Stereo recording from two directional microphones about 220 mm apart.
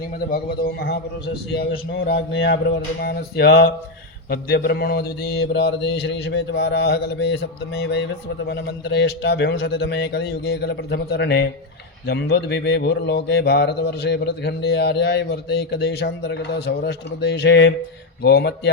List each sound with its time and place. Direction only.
0.3 s speech: 40° left (ahead or behind)